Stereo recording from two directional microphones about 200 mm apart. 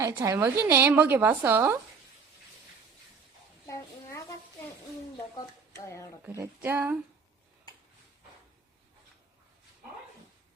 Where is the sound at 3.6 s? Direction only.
15° left (ahead or behind).